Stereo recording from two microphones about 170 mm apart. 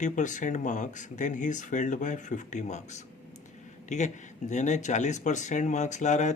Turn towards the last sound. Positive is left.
turn(degrees=45)  # may be behind; listen again after turning